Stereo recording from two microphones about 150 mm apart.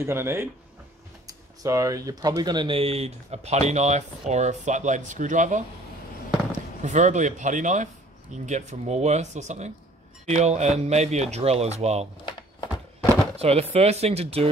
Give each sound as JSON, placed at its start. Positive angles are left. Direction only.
{"t": 0.0, "sound": "speech", "side_deg": -15}
{"t": 6.8, "sound": "speech", "side_deg": -50}
{"t": 12.3, "sound": "a sound", "side_deg": 30}
{"t": 13.4, "sound": "speech", "side_deg": -45}